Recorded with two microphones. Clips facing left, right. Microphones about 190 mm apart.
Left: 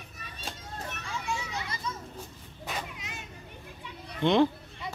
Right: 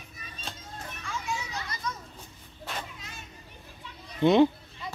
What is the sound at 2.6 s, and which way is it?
Children playing, 10° left (ahead or behind).